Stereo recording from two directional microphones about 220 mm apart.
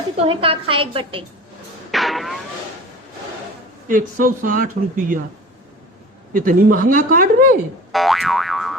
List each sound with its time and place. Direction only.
0.3 s a woman's voice: 25° right (ahead or behind)
1.9 s a sound: centre (ahead or behind)
3.8 s speech: 40° right (ahead or behind)
6.3 s speech: 40° right (ahead or behind)
7.9 s boing: centre (ahead or behind)